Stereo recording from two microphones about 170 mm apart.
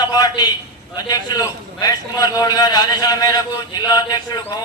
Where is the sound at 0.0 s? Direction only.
25° left (ahead or behind).